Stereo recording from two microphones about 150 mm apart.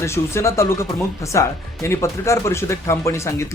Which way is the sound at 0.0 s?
20° left (ahead or behind).